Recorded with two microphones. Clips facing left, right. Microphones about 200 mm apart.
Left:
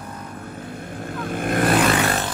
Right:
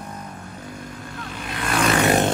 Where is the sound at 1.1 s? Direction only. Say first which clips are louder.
Left 12 dB; 50° left (ahead or behind).